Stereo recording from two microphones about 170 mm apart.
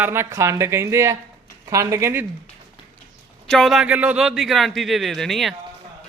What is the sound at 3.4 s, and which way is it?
A man's voice, centre (ahead or behind).